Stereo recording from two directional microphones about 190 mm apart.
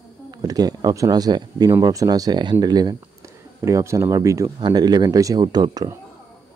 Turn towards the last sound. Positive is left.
turn(degrees=-20)  # may be behind; listen again after turning